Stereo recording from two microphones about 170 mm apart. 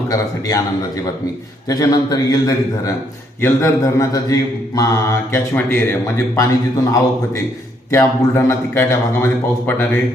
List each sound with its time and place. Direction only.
0.1 s a man's voice: 20° left (ahead or behind)
1.6 s a man's voice: 20° left (ahead or behind)
7.9 s speech: 15° left (ahead or behind)